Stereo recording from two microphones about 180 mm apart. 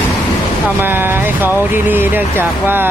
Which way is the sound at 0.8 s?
10° right (ahead or behind).